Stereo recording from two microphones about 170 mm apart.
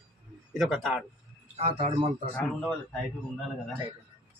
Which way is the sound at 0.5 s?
Centre (ahead or behind).